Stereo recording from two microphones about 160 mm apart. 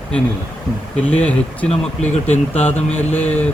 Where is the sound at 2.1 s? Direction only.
45° left (ahead or behind).